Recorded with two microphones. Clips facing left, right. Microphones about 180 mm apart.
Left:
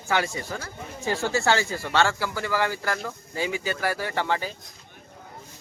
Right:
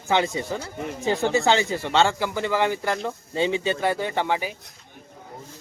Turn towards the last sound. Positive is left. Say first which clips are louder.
# right 2 dB
turn(degrees=-15)  # may be behind; listen again after turning